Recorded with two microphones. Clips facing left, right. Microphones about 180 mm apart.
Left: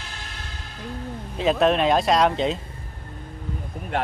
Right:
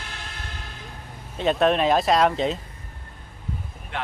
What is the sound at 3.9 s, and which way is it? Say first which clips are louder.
Speech: left 6 dB; 45° left (ahead or behind).